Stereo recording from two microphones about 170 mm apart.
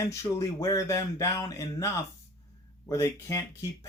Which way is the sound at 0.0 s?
15° left (ahead or behind).